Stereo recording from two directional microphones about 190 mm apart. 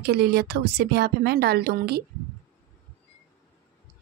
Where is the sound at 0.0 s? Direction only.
55° right (ahead or behind).